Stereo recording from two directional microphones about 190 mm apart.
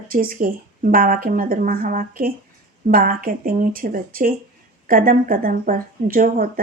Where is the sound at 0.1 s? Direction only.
50° right (ahead or behind).